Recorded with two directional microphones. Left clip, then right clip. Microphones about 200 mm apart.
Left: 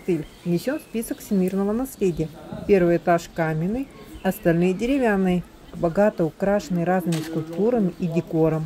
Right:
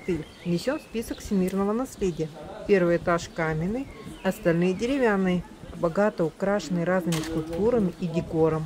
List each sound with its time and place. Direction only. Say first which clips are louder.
0.1 s a woman's voice: left 5 dB; 5° right (ahead or behind)
1.6 s speech: left 2 dB; 15° right (ahead or behind)
2.0 s a woman's voice: left 4 dB; centre (ahead or behind)